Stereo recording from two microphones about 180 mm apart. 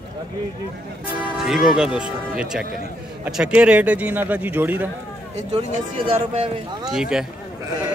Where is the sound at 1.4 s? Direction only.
5° right (ahead or behind).